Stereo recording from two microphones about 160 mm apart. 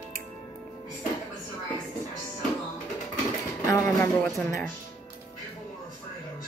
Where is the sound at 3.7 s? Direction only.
15° left (ahead or behind).